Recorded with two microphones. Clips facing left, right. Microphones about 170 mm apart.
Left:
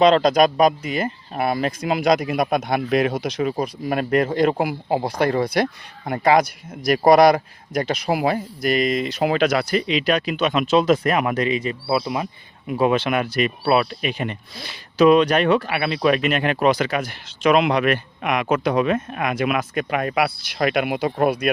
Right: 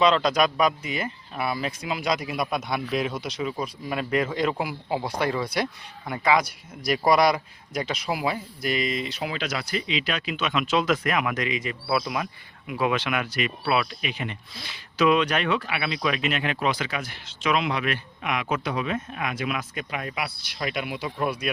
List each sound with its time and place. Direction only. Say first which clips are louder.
0.0 s speech: left 6 dB; 50° left (ahead or behind); by 3.1 s 65° left (ahead or behind)
3.1 s speech: left 7 dB; 50° left (ahead or behind)